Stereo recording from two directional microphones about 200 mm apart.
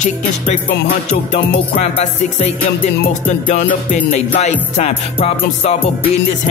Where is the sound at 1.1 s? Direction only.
30° left (ahead or behind).